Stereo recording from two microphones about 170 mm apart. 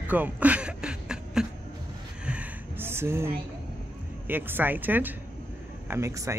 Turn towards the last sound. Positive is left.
turn(degrees=-15)  # may be behind; listen again after turning